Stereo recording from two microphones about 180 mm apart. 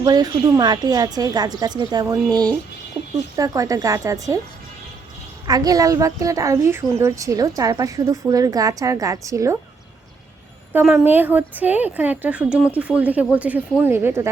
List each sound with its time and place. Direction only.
0.0 s a woman's voice: 20° right (ahead or behind)
5.5 s a woman's voice: 20° right (ahead or behind)
10.7 s a woman's voice: 10° right (ahead or behind)